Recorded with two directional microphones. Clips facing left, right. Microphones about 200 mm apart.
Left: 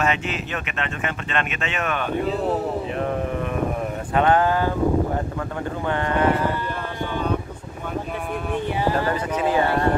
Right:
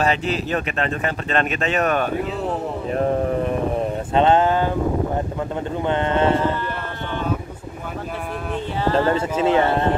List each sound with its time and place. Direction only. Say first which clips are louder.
0.0 s speech: right 3 dB; 35° right (ahead or behind)
2.9 s a sound: right 5 dB; 35° right (ahead or behind)
4.1 s speech: right 2 dB; 20° right (ahead or behind)
5.9 s speech: right 2 dB; 20° right (ahead or behind)
8.8 s speech: right 5 dB; 15° left (ahead or behind)
9.1 s speech: right 3 dB; 25° right (ahead or behind)